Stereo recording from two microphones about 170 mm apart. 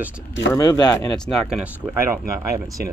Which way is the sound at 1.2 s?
Centre (ahead or behind).